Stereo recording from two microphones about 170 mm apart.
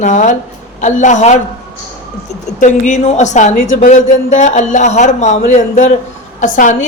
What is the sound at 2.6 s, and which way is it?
A woman's voice, 45° left (ahead or behind).